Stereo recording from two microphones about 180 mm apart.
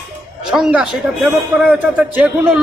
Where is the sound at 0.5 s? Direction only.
5° right (ahead or behind).